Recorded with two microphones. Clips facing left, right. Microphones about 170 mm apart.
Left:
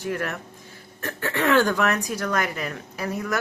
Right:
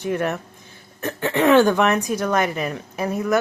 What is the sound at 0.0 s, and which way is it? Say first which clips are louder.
Speech: right 5 dB; 20° right (ahead or behind).